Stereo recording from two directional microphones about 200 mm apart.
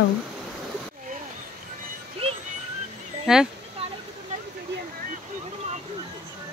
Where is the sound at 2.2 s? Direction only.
30° right (ahead or behind).